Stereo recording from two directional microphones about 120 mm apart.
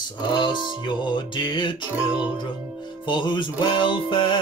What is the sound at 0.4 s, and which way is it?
Music, 40° left (ahead or behind).